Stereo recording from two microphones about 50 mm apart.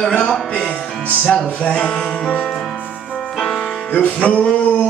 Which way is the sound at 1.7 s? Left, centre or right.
Centre.